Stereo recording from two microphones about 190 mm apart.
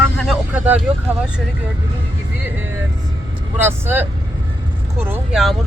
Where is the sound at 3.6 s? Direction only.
10° right (ahead or behind).